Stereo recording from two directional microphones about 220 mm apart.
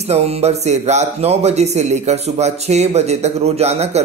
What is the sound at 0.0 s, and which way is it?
A man's voice, 30° right (ahead or behind).